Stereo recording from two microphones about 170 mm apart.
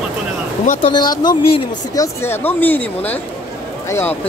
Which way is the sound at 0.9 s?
25° left (ahead or behind).